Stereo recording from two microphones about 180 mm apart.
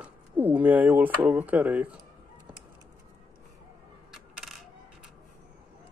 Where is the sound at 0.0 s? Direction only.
10° right (ahead or behind).